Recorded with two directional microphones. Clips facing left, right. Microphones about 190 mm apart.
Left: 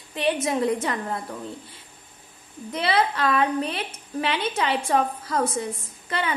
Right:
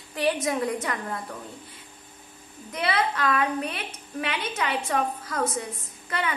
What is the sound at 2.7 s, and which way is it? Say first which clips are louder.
A woman's voice: left 3 dB; 30° left (ahead or behind).